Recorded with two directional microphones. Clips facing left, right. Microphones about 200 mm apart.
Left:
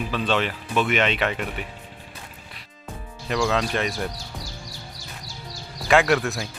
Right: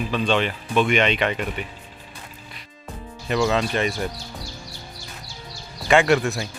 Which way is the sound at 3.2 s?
Centre (ahead or behind).